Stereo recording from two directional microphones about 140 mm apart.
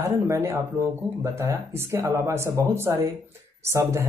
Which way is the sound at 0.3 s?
20° right (ahead or behind).